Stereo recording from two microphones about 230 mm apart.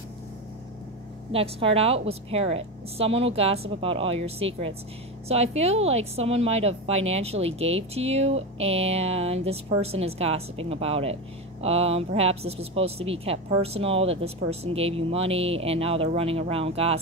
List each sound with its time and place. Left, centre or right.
1.3 s a woman's voice: right